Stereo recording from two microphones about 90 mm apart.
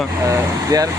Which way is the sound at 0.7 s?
40° right (ahead or behind).